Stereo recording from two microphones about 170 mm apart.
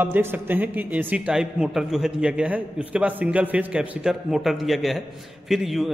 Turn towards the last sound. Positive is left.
turn(degrees=0)  # may be behind; listen again after turning